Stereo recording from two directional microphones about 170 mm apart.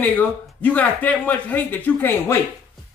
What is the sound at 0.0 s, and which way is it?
Speech, 10° left (ahead or behind).